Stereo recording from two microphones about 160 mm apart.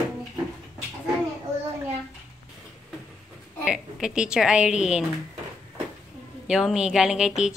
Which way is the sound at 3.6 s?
5° right (ahead or behind).